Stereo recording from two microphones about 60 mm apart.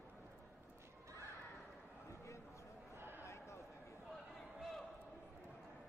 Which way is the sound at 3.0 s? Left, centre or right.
Right.